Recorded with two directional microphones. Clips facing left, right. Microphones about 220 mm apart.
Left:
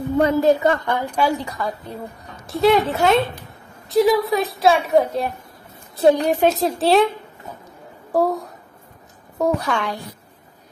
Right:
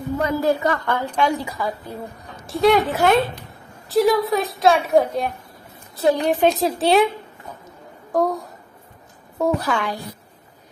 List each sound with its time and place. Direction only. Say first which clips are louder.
0.2 s a woman's voice: left 5 dB; 25° left (ahead or behind); by 1.4 s 10° left (ahead or behind)
1.4 s a woman's voice: even; 5° right (ahead or behind)
8.1 s a woman's voice: left 1 dB; 5° left (ahead or behind)